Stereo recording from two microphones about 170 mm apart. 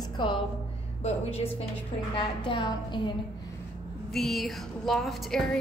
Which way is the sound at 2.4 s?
25° left (ahead or behind).